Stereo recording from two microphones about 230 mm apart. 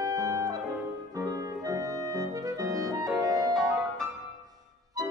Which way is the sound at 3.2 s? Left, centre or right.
Centre.